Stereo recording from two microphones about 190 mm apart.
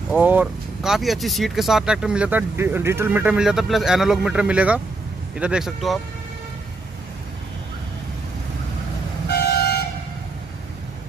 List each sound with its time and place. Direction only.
0.2 s speech: 10° right (ahead or behind)
9.3 s toot: 60° left (ahead or behind)